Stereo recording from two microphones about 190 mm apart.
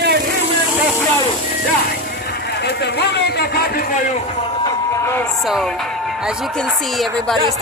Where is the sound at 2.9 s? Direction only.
60° left (ahead or behind).